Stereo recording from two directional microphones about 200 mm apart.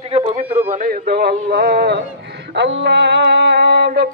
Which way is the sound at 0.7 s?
45° right (ahead or behind).